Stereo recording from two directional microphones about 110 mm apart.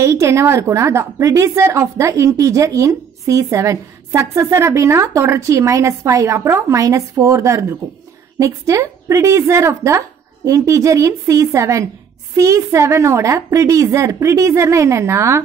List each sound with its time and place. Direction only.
0.0 s a woman's voice: 25° right (ahead or behind)